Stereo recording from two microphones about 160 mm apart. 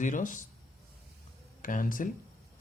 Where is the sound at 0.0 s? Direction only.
55° left (ahead or behind).